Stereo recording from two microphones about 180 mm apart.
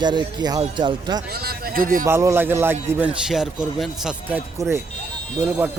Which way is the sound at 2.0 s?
15° right (ahead or behind).